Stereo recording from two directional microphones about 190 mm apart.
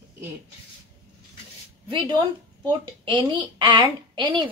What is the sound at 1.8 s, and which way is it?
A woman's voice, 25° right (ahead or behind).